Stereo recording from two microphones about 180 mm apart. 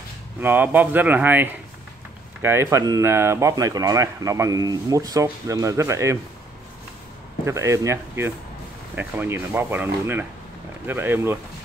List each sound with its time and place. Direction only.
0.4 s speech: 10° right (ahead or behind)
7.4 s speech: 15° right (ahead or behind)